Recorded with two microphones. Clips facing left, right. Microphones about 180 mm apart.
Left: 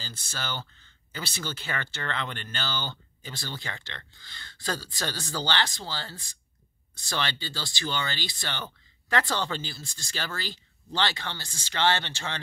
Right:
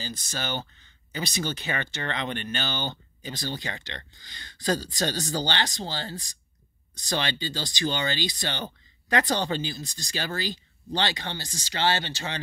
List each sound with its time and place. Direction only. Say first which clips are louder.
0.0 s speech: right 4 dB; 15° right (ahead or behind)